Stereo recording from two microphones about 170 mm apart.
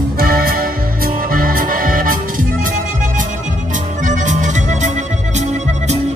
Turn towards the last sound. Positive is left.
turn(degrees=-45)  # may be behind; listen again after turning